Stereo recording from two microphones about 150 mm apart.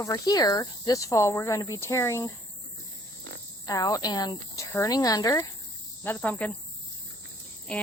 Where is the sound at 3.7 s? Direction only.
25° left (ahead or behind).